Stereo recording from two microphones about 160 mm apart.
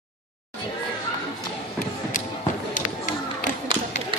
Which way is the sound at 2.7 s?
55° left (ahead or behind).